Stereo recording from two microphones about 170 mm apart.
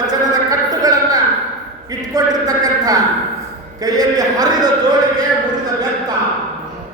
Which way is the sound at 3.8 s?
20° right (ahead or behind).